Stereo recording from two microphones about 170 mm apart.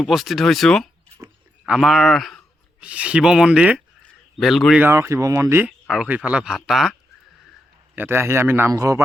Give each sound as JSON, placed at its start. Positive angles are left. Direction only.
{"t": 0.0, "sound": "speech", "side_deg": 0}
{"t": 4.0, "sound": "a sound", "side_deg": 0}
{"t": 4.8, "sound": "a man's voice", "side_deg": -15}
{"t": 7.9, "sound": "a man's voice", "side_deg": -15}